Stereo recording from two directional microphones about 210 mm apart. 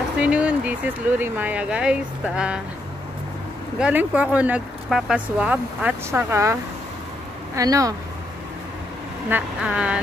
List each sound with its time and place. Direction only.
0.2 s speech: 5° right (ahead or behind)
3.8 s speech: 5° right (ahead or behind)
9.3 s speech: 5° right (ahead or behind)